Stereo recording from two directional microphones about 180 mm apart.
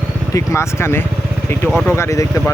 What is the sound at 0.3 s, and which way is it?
Speech, 15° left (ahead or behind).